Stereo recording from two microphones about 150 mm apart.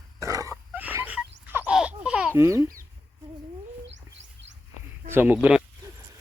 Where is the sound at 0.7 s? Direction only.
10° right (ahead or behind).